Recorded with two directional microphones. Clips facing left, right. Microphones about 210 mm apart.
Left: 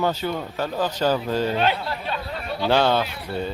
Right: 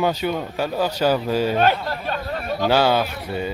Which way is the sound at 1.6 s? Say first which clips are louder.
Right 3 dB; 45° right (ahead or behind).